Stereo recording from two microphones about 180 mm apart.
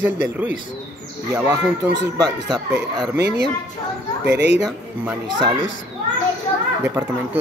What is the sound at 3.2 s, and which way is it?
Speech, 65° right (ahead or behind).